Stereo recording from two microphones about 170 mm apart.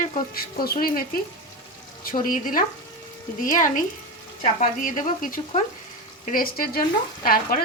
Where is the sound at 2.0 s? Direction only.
55° left (ahead or behind).